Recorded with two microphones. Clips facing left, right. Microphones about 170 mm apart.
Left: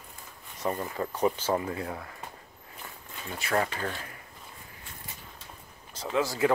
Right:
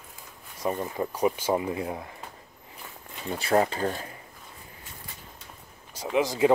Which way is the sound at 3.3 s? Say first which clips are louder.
Right 5 dB; 35° right (ahead or behind).